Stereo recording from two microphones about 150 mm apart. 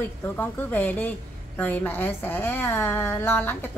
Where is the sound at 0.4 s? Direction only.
10° left (ahead or behind).